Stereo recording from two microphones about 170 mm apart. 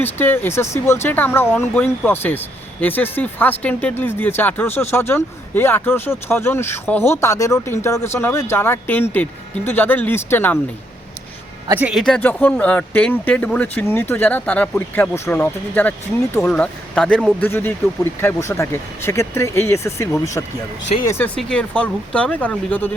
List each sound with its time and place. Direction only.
0.0 s speech: 10° left (ahead or behind)
11.7 s speech: 10° right (ahead or behind)
11.9 s speech: 5° left (ahead or behind)